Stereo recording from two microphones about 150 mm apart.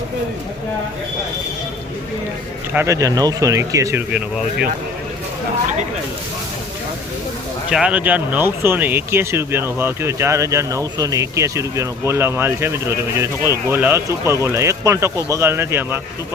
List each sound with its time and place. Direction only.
2.7 s speech: 20° right (ahead or behind)
7.7 s speech: 5° right (ahead or behind)